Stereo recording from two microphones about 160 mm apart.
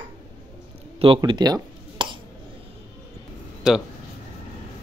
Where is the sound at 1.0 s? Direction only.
30° right (ahead or behind).